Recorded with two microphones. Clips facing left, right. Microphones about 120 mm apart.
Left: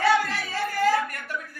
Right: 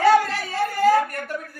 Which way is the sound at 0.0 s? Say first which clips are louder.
Right 5 dB; 45° right (ahead or behind).